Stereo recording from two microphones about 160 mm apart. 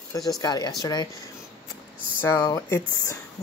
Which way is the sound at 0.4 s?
25° left (ahead or behind).